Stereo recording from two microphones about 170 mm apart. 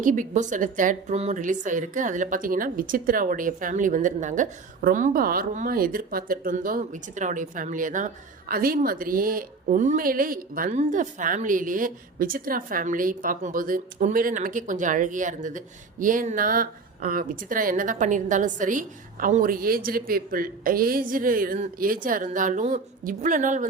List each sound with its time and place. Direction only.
0.0 s a woman's voice: 50° right (ahead or behind)